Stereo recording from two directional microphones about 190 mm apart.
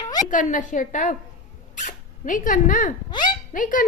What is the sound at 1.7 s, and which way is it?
Zipper, 40° left (ahead or behind).